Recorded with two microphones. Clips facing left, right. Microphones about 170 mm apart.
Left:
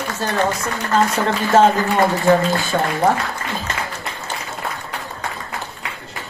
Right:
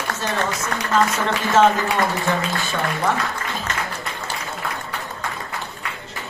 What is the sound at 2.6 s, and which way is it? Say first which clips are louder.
Speech: left 5 dB; 35° left (ahead or behind).